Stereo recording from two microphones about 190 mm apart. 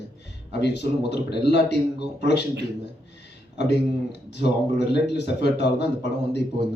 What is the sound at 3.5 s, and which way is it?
A man's voice, 60° left (ahead or behind).